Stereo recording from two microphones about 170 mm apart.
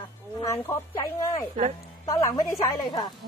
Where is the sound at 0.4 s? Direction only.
20° left (ahead or behind).